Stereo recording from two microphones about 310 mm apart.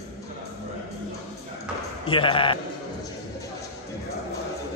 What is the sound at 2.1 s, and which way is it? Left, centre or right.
Speech, centre.